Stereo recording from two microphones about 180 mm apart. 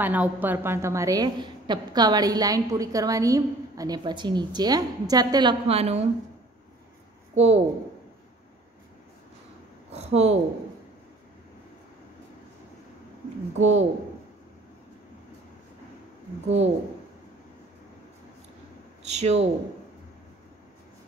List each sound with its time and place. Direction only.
0.0 s a woman's voice: 10° right (ahead or behind); by 6.0 s 35° right (ahead or behind)
7.3 s speech: 35° right (ahead or behind)
9.9 s speech: 35° right (ahead or behind)
13.6 s speech: 40° right (ahead or behind)
16.4 s speech: 35° right (ahead or behind)
19.0 s speech: 40° right (ahead or behind)